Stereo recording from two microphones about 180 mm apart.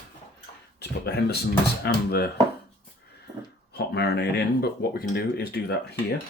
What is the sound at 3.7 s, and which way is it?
Speech, 65° left (ahead or behind).